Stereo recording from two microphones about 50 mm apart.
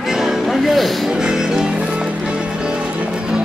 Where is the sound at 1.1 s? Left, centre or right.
Centre.